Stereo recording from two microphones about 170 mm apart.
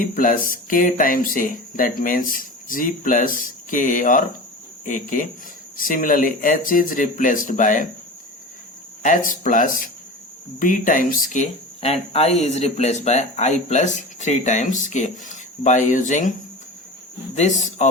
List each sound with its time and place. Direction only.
0.0 s speech: 55° left (ahead or behind)
9.0 s speech: 50° left (ahead or behind)
17.3 s speech: 45° left (ahead or behind)